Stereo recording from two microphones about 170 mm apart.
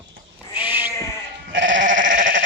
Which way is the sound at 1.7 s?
50° right (ahead or behind).